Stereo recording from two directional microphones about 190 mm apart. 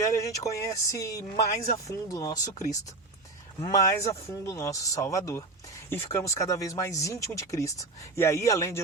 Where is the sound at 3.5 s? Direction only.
15° left (ahead or behind).